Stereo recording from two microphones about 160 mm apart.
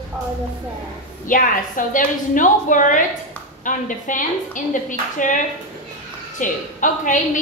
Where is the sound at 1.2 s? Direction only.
55° left (ahead or behind).